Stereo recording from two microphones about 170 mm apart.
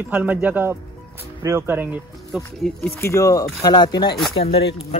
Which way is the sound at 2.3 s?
5° left (ahead or behind).